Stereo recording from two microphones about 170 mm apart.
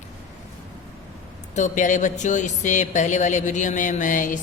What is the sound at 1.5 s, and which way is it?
Mantra, 45° left (ahead or behind).